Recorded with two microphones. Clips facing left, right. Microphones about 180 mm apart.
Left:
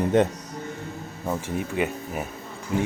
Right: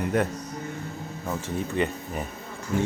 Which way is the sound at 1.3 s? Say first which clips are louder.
Left 2 dB; 10° left (ahead or behind).